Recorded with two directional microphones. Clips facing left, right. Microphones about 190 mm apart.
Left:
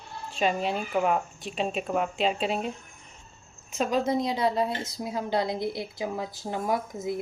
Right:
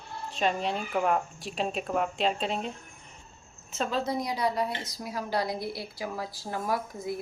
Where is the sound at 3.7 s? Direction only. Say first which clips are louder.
Left 4 dB; 15° left (ahead or behind).